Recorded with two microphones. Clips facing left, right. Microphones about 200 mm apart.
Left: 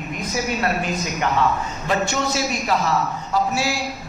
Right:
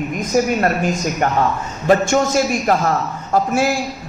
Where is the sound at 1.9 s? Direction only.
50° right (ahead or behind).